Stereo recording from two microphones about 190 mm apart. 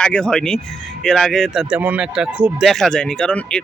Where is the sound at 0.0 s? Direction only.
5° left (ahead or behind).